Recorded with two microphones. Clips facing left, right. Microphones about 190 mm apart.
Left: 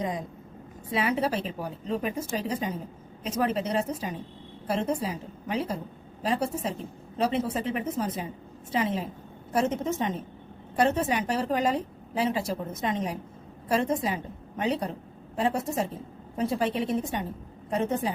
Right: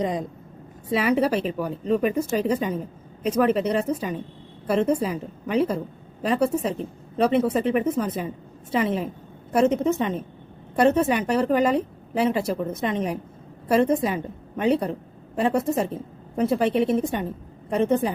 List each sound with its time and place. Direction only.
0.9 s a woman's voice: 70° right (ahead or behind)